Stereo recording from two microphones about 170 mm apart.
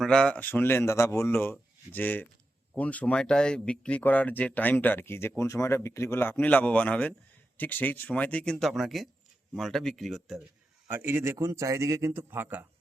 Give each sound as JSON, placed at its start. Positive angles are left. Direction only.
{"t": 0.0, "sound": "speech", "side_deg": 5}
{"t": 10.8, "sound": "speech", "side_deg": -10}